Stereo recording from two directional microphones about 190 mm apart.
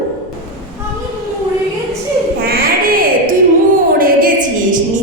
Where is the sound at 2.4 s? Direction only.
50° right (ahead or behind).